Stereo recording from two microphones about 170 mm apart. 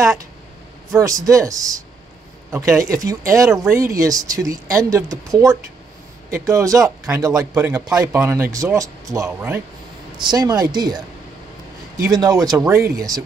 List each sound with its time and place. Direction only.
0.9 s speech: 20° right (ahead or behind)
12.0 s speech: 20° right (ahead or behind)